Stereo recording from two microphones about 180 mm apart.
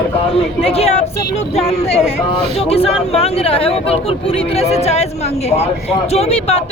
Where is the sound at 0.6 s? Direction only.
35° left (ahead or behind).